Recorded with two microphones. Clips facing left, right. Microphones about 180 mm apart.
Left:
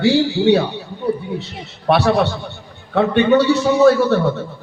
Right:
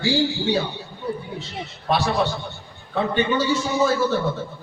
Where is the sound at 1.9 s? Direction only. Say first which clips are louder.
Left 7 dB; 70° left (ahead or behind).